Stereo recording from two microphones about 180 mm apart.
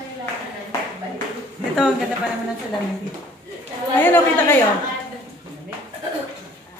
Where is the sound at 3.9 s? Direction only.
10° left (ahead or behind).